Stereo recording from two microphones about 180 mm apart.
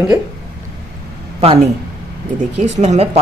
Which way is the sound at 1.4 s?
35° right (ahead or behind).